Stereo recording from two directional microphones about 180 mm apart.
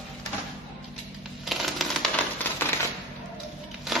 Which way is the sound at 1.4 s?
Centre (ahead or behind).